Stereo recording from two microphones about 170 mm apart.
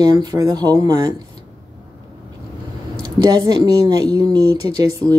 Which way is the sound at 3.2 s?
25° right (ahead or behind).